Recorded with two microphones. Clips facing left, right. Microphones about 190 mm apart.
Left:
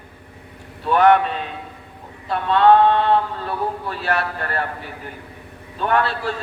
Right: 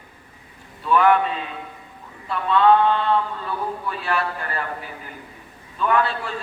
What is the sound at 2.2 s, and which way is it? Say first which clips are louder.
A man's voice: left 2 dB; 70° left (ahead or behind).